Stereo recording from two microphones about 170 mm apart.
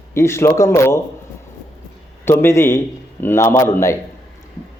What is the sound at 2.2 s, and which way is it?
Mantra, 15° left (ahead or behind).